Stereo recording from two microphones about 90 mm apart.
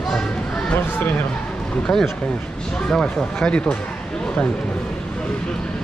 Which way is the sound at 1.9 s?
Centre (ahead or behind).